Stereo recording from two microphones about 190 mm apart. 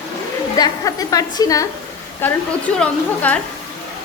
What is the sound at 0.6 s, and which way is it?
A woman's voice, 20° left (ahead or behind).